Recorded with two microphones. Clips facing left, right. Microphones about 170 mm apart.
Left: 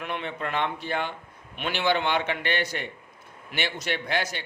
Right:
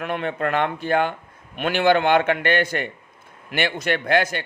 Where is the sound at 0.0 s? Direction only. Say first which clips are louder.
Right 7 dB; 50° right (ahead or behind).